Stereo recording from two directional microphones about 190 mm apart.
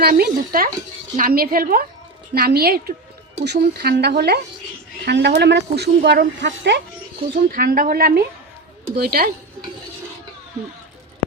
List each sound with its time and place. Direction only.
0.0 s speech: 50° right (ahead or behind)
7.5 s speech: 50° right (ahead or behind)